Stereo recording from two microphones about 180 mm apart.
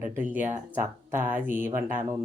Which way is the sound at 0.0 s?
10° right (ahead or behind).